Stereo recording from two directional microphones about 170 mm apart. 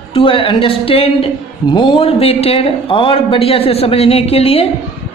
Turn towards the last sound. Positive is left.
turn(degrees=35)  # may be behind; listen again after turning